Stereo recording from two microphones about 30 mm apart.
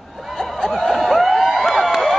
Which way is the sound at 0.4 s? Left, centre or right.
Centre.